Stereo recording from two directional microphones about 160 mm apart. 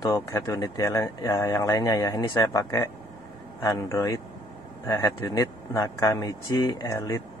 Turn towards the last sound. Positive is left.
turn(degrees=20)  # may be behind; listen again after turning